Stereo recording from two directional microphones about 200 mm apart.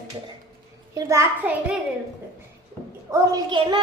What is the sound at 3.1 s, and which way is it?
Speech, 20° right (ahead or behind).